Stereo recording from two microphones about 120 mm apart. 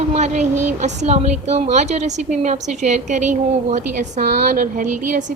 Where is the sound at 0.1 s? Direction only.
75° right (ahead or behind).